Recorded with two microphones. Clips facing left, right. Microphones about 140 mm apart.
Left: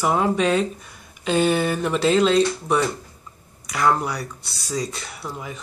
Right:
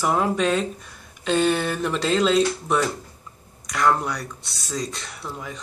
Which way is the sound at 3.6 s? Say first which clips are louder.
Left 1 dB; 5° left (ahead or behind).